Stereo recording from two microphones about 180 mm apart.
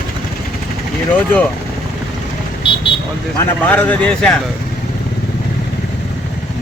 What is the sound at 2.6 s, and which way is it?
Vehicle, 25° left (ahead or behind).